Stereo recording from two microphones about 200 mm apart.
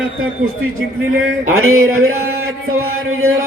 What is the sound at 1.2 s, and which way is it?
Speech, 85° right.